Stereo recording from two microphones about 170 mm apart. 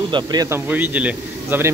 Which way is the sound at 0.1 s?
25° right (ahead or behind).